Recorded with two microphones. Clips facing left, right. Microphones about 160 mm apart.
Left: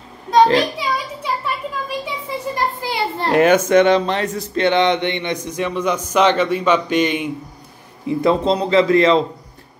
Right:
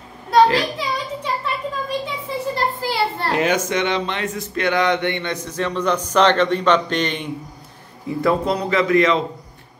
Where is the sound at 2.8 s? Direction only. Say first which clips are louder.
Even; 20° left (ahead or behind).